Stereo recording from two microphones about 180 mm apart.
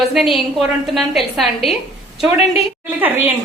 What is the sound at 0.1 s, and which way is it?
A woman's voice, centre (ahead or behind).